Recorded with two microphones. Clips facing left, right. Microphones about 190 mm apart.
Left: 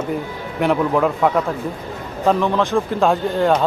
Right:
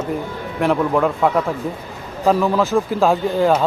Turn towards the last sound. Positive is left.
turn(degrees=0)  # may be behind; listen again after turning